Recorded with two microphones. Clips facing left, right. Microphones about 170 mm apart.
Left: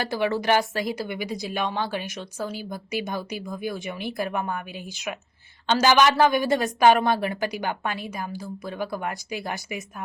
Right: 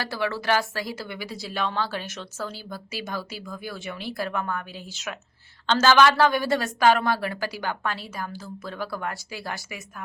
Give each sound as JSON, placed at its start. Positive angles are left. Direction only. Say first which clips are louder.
{"t": 0.0, "sound": "a woman's voice", "louder": "left 4 dB", "side_deg": 20}